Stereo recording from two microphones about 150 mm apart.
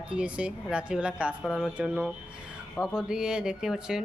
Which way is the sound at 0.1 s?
5° right (ahead or behind).